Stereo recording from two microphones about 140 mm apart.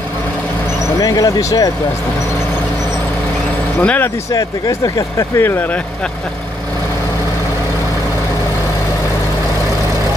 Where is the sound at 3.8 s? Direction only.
10° left (ahead or behind).